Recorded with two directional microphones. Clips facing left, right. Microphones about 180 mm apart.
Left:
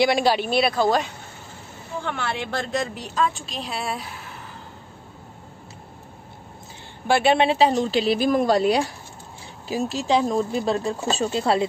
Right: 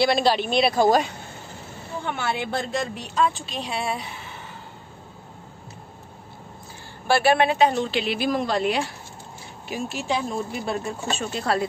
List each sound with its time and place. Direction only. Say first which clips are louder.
0.0 s speech: left 1 dB; 10° left (ahead or behind)
2.0 s a woman's voice: right 2 dB; 5° right (ahead or behind)
7.1 s speech: left 1 dB; 20° left (ahead or behind)